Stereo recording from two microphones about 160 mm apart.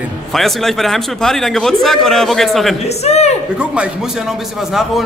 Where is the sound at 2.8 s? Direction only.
40° left (ahead or behind).